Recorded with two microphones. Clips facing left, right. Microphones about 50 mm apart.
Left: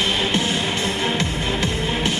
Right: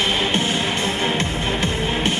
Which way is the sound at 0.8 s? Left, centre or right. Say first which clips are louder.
Right 1 dB; right.